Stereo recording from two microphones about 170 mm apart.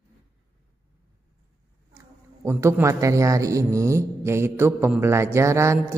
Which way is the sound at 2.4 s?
15° right (ahead or behind).